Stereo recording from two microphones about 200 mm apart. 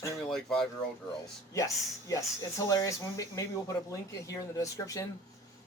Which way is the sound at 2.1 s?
15° left (ahead or behind).